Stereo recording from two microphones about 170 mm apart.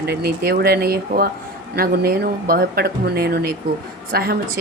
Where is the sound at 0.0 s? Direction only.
70° right (ahead or behind).